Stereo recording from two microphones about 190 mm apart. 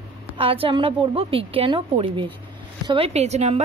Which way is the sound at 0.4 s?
30° right (ahead or behind).